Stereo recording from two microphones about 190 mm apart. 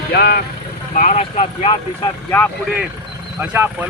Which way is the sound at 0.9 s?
40° left (ahead or behind).